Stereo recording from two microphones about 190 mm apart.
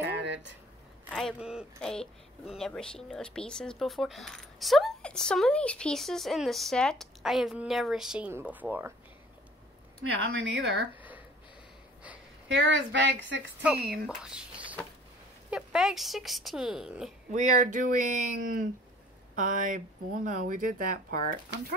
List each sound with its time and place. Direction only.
0.1 s a sound: 65° right (ahead or behind)
1.1 s speech: centre (ahead or behind)
10.2 s speech: 70° right (ahead or behind)
11.0 s a sound: 10° right (ahead or behind)
12.4 s speech: 70° right (ahead or behind)
13.7 s speech: 55° right (ahead or behind)
14.0 s whispering: 5° right (ahead or behind)
15.5 s speech: 5° right (ahead or behind)
17.3 s speech: 40° right (ahead or behind)